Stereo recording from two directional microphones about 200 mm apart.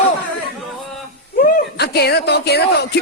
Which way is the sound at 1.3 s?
50° left (ahead or behind).